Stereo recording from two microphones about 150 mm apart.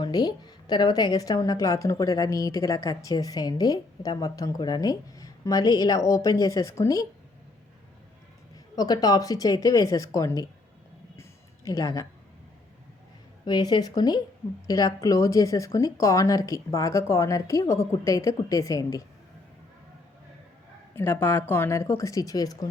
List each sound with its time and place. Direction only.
0.0 s a woman's voice: 25° left (ahead or behind)
8.7 s a woman's voice: 25° left (ahead or behind)
11.2 s a sound: 25° left (ahead or behind)
13.4 s a woman's voice: 30° left (ahead or behind)
20.9 s speech: 15° left (ahead or behind)